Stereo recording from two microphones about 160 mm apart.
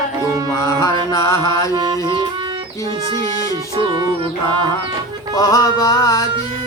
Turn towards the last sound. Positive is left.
turn(degrees=20)  # may be behind; listen again after turning